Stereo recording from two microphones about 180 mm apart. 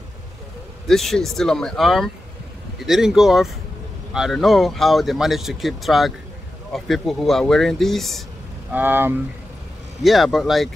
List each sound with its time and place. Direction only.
0.8 s speech: centre (ahead or behind)
8.7 s speech: 10° right (ahead or behind)
10.0 s speech: centre (ahead or behind)